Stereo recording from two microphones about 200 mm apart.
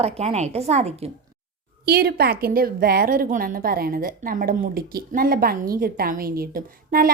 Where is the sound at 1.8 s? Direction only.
50° right (ahead or behind).